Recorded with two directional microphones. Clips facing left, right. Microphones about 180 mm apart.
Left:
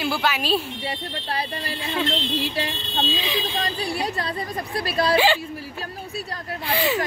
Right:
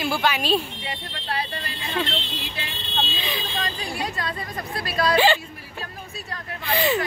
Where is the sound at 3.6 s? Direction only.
35° left (ahead or behind).